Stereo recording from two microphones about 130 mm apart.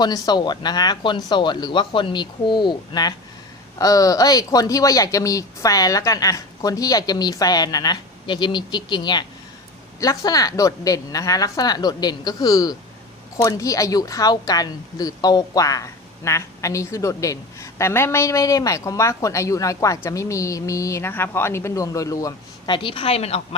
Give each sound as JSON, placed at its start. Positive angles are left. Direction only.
{"t": 0.0, "sound": "a woman's voice", "side_deg": 30}